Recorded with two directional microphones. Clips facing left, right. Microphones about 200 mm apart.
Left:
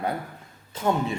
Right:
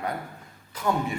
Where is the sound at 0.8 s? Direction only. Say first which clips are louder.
Left 2 dB; 25° left (ahead or behind).